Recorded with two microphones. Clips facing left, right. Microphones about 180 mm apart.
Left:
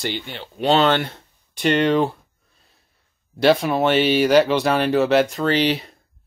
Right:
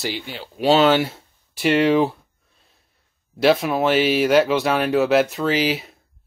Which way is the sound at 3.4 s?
Centre (ahead or behind).